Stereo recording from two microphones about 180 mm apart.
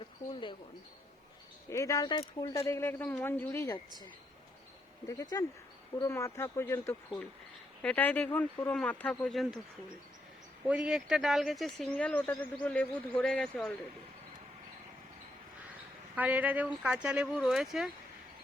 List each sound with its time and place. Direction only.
0.0 s a sound: 25° left (ahead or behind)
1.7 s speech: 15° left (ahead or behind)
5.0 s speech: 20° left (ahead or behind); by 9.6 s centre (ahead or behind)
10.7 s speech: 5° right (ahead or behind)
16.1 s speech: 10° right (ahead or behind)